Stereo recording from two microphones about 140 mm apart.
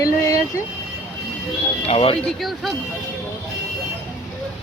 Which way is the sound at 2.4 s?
Centre (ahead or behind).